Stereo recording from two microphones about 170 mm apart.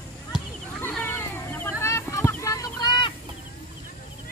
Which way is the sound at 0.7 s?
10° left (ahead or behind).